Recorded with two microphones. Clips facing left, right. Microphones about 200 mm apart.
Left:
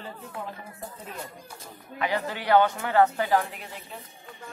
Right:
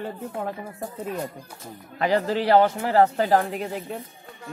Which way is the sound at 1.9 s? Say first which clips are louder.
Right 7 dB; 35° right (ahead or behind).